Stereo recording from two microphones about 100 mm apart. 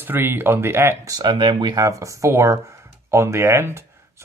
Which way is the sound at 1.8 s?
35° right (ahead or behind).